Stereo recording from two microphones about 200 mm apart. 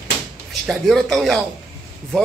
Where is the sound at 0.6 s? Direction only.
Centre (ahead or behind).